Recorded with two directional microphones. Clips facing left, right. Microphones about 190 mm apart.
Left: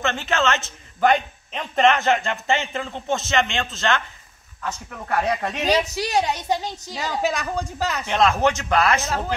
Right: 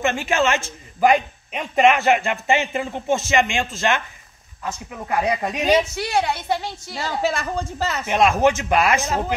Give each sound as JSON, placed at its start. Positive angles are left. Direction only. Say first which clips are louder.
{"t": 0.0, "sound": "a man's voice", "louder": "right 2 dB", "side_deg": -15}
{"t": 6.1, "sound": "speech", "louder": "right 1 dB", "side_deg": 15}
{"t": 7.2, "sound": "speech", "louder": "right 2 dB", "side_deg": -5}
{"t": 8.1, "sound": "a man's voice", "louder": "right 3 dB", "side_deg": -15}